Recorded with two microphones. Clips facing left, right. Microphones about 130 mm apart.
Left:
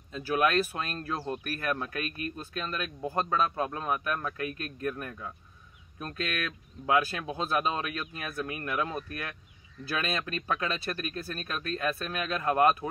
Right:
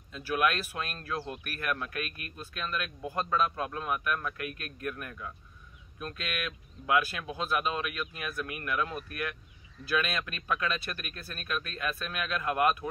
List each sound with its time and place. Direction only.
0.1 s speech: 35° left (ahead or behind)